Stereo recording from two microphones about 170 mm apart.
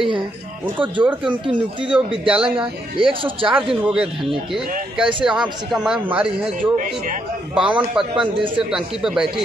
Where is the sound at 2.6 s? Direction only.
30° right (ahead or behind).